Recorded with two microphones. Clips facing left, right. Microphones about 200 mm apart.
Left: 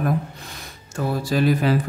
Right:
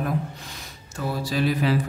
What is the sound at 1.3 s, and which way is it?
Speech, 50° left (ahead or behind).